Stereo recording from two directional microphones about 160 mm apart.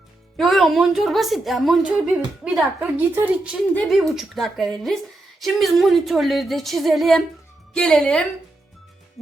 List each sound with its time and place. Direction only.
0.3 s a woman's voice: centre (ahead or behind)